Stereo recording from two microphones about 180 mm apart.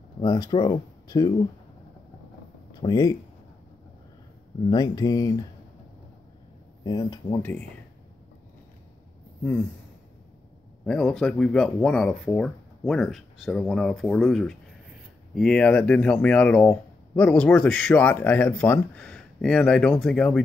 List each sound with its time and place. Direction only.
0.2 s speech: 20° left (ahead or behind)
2.7 s speech: 20° left (ahead or behind)
4.6 s speech: 20° left (ahead or behind)
6.8 s speech: 25° left (ahead or behind)
10.9 s speech: 5° left (ahead or behind)